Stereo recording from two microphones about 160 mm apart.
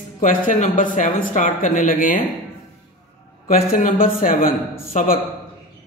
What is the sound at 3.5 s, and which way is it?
A man's voice, 60° left (ahead or behind).